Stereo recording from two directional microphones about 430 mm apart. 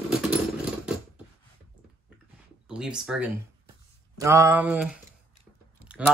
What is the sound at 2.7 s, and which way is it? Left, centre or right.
Speech, centre.